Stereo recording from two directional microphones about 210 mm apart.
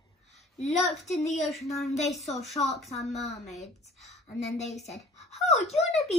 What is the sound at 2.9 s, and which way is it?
Speech, 30° left (ahead or behind).